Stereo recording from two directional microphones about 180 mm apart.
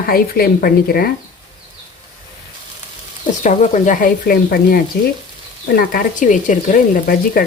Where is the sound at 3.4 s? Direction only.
45° left (ahead or behind).